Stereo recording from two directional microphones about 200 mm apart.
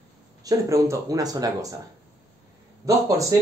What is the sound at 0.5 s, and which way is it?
Speech, 15° right (ahead or behind).